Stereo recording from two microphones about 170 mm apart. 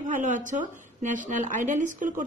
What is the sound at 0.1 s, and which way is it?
Speech, 50° right (ahead or behind).